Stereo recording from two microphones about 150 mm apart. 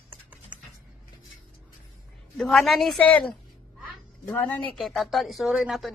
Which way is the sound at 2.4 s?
5° left (ahead or behind).